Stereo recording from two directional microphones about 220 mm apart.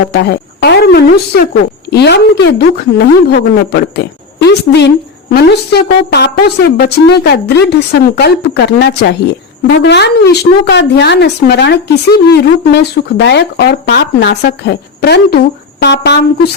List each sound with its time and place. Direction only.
0.1 s a woman's voice: 50° left (ahead or behind)